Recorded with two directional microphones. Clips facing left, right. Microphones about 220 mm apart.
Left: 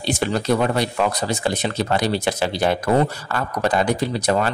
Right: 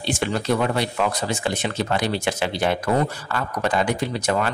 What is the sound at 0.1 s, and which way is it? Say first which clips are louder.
Speech: left 2 dB; 40° left (ahead or behind).